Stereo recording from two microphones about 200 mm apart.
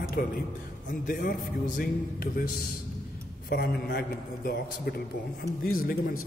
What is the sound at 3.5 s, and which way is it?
A man's voice, 55° left (ahead or behind).